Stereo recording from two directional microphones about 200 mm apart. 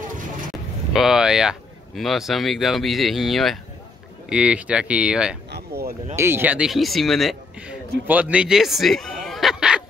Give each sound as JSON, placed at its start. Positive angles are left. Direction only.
{"t": 0.9, "sound": "speech", "side_deg": 0}
{"t": 5.5, "sound": "a sound", "side_deg": -50}
{"t": 6.1, "sound": "speech", "side_deg": -10}